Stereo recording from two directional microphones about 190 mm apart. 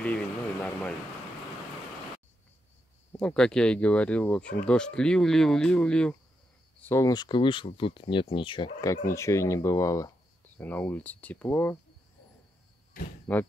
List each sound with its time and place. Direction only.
0.0 s a sound: 5° left (ahead or behind)
3.1 s speech: 5° left (ahead or behind)
13.3 s speech: 5° left (ahead or behind)